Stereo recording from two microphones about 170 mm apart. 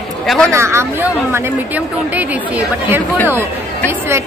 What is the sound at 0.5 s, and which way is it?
Speech, 15° right (ahead or behind).